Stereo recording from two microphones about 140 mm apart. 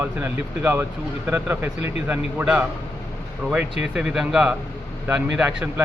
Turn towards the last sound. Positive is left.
turn(degrees=-10)  # may be behind; listen again after turning